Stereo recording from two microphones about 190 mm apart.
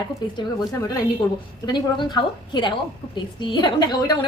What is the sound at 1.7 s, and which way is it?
A woman's voice, 25° left (ahead or behind).